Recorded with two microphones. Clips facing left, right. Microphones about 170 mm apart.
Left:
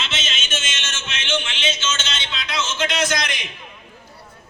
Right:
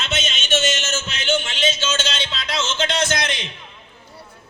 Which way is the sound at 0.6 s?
40° right (ahead or behind).